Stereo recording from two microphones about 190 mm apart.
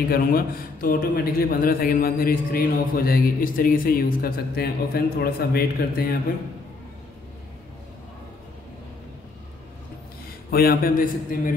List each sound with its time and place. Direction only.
0.1 s speech: 50° left (ahead or behind)
10.5 s speech: 50° left (ahead or behind)